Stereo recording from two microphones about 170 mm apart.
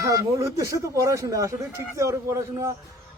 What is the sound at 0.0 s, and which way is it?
A man's voice, 20° right (ahead or behind).